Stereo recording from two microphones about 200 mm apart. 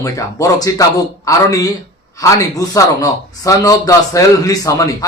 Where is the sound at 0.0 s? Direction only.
15° left (ahead or behind).